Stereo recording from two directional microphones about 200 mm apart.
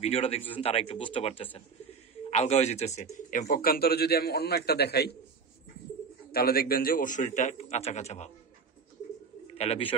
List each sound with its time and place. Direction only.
0.0 s speech: 30° left (ahead or behind); by 5.1 s 55° left (ahead or behind)
6.3 s a man's voice: 50° left (ahead or behind)
9.6 s speech: 30° left (ahead or behind)